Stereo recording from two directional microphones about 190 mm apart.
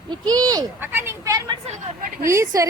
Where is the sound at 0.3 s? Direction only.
20° right (ahead or behind).